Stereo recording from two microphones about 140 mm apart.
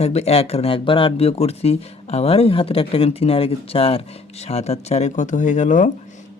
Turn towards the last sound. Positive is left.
turn(degrees=60)  # may be behind; listen again after turning